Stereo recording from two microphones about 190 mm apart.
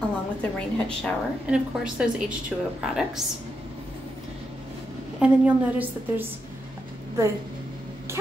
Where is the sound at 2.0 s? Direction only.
5° right (ahead or behind).